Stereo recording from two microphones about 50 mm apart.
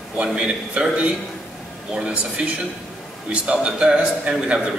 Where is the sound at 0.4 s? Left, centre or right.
Right.